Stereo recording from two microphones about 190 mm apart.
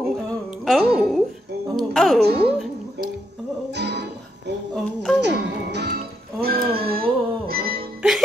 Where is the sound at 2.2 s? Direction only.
60° right (ahead or behind).